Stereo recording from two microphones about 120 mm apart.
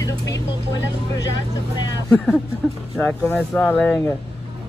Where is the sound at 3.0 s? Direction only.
15° left (ahead or behind).